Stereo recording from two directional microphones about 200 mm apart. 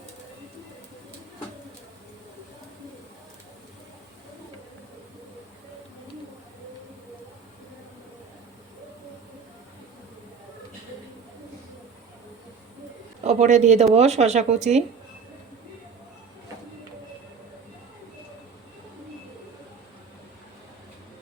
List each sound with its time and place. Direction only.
13.2 s speech: 35° right (ahead or behind)